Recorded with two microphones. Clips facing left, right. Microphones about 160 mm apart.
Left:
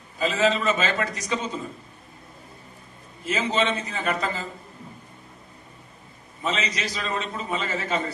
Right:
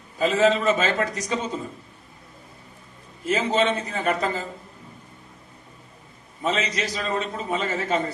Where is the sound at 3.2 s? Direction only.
45° right (ahead or behind).